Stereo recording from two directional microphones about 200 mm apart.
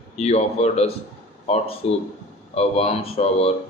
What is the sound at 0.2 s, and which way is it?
Speech, 35° left (ahead or behind).